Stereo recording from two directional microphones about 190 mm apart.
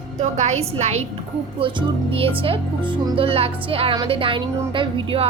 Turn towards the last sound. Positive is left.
turn(degrees=-30)  # may be behind; listen again after turning